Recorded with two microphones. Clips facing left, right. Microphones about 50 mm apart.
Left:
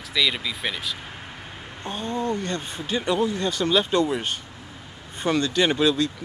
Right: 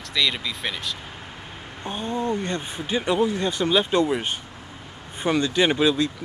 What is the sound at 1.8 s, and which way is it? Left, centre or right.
Speech, centre.